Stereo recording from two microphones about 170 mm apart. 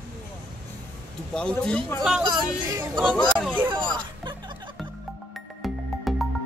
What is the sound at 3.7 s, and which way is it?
Snicker, 25° right (ahead or behind).